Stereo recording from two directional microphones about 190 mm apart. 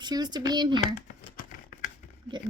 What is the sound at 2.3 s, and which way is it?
Speech, 25° right (ahead or behind).